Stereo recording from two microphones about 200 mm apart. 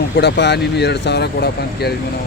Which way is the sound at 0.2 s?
55° left (ahead or behind).